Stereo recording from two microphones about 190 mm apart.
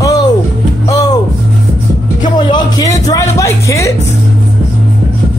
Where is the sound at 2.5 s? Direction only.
20° left (ahead or behind).